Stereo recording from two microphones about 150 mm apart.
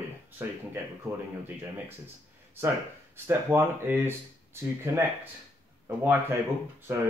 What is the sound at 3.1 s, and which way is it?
Speech, 15° right (ahead or behind).